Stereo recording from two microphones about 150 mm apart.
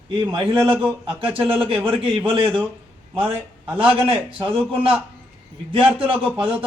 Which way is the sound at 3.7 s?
35° right (ahead or behind).